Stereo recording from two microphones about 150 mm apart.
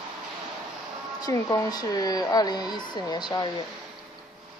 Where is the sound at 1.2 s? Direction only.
25° left (ahead or behind).